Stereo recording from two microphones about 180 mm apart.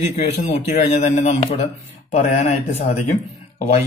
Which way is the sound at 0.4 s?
40° left (ahead or behind).